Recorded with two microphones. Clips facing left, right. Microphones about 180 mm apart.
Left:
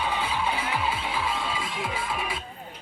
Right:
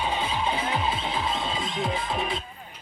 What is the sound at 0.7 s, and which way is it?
Music, 25° right (ahead or behind).